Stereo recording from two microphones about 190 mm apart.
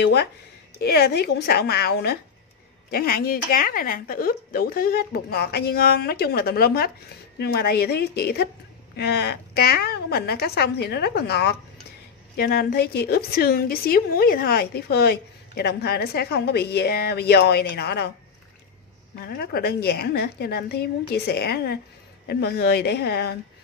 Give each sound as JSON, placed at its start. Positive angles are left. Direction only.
{"t": 0.0, "sound": "a woman's voice", "side_deg": 60}
{"t": 19.2, "sound": "a woman's voice", "side_deg": 55}